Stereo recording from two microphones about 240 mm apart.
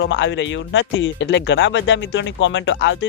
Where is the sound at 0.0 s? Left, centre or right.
Left.